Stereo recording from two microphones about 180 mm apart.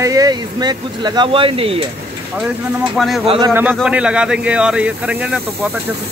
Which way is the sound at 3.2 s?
30° right (ahead or behind).